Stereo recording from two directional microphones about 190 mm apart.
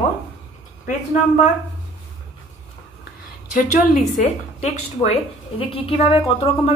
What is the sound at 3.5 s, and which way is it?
A woman's voice, 40° left (ahead or behind).